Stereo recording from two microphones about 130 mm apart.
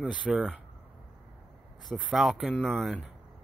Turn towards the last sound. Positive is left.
turn(degrees=0)  # may be behind; listen again after turning